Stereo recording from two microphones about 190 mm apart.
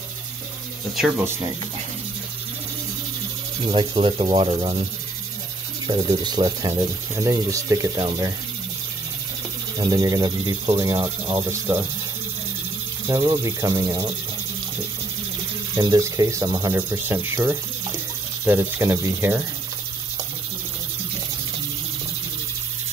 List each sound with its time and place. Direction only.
0.9 s speech: centre (ahead or behind)
3.6 s speech: 25° right (ahead or behind)
5.9 s speech: 20° right (ahead or behind)
9.8 s speech: 20° right (ahead or behind)
13.1 s speech: 25° right (ahead or behind)
15.7 s speech: 15° right (ahead or behind)
16.7 s speech: 10° right (ahead or behind)